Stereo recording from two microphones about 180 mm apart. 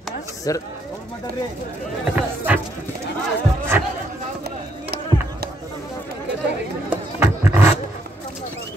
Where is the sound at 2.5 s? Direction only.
10° right (ahead or behind).